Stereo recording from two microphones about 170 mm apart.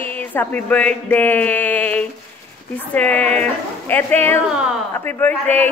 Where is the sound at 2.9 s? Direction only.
10° left (ahead or behind).